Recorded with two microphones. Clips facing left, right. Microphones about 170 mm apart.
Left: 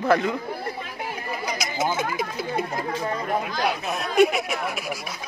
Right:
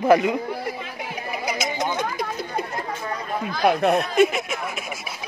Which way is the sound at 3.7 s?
65° right (ahead or behind).